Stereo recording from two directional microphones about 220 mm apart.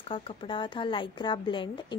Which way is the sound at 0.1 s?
25° left (ahead or behind).